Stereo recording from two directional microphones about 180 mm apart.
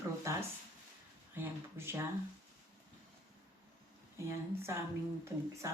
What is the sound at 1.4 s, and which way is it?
Speech, 15° right (ahead or behind).